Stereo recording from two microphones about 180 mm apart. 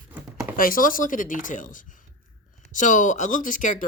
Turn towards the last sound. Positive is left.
turn(degrees=45)  # may be behind; listen again after turning